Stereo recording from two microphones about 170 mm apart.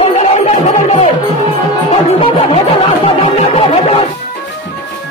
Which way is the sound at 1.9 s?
35° left (ahead or behind).